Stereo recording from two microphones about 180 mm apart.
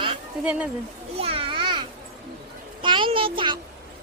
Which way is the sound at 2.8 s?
25° right (ahead or behind).